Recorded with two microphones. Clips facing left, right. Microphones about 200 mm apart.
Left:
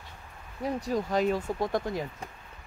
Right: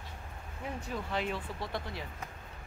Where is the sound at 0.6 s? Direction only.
35° left (ahead or behind).